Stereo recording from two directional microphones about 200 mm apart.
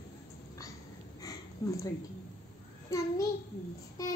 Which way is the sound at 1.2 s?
15° left (ahead or behind).